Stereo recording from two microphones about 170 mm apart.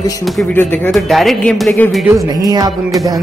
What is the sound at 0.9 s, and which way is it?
Speech, centre (ahead or behind).